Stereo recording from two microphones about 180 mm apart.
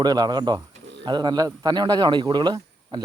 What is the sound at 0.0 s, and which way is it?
Speech, 20° right (ahead or behind).